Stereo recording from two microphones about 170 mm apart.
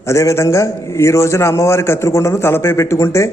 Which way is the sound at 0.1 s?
15° left (ahead or behind).